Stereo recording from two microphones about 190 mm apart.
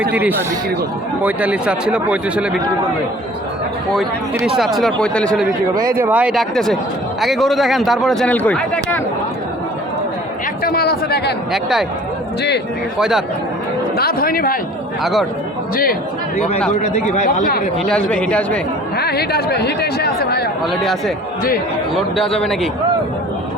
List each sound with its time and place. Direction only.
0.1 s speech: 10° right (ahead or behind)
4.4 s a man's voice: centre (ahead or behind)
6.0 s a man's voice: 10° right (ahead or behind)
10.6 s speech: 55° left (ahead or behind)
11.5 s a man's voice: centre (ahead or behind)
13.0 s a man's voice: 5° right (ahead or behind)
13.9 s a man's voice: 50° left (ahead or behind)
15.7 s a man's voice: 50° left (ahead or behind)
17.8 s a man's voice: 5° left (ahead or behind)
18.9 s speech: 55° left (ahead or behind)
21.9 s a man's voice: centre (ahead or behind)